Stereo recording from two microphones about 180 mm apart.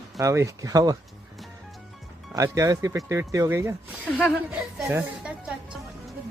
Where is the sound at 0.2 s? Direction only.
15° right (ahead or behind).